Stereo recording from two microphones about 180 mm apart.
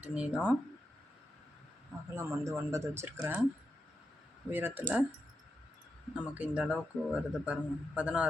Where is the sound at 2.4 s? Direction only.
15° right (ahead or behind).